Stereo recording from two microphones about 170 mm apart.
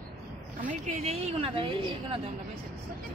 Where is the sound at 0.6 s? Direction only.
45° right (ahead or behind); by 2.2 s 30° right (ahead or behind).